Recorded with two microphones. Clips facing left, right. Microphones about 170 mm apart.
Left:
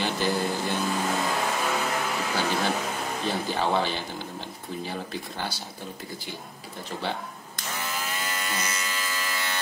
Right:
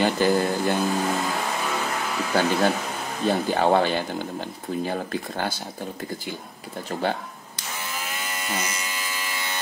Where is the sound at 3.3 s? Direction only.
50° right (ahead or behind).